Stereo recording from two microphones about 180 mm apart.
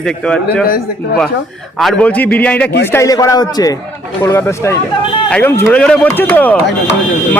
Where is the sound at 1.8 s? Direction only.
5° left (ahead or behind).